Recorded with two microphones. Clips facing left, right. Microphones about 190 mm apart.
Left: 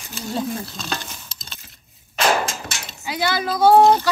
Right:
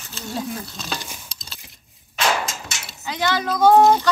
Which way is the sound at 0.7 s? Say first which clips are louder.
Left 2 dB; centre (ahead or behind).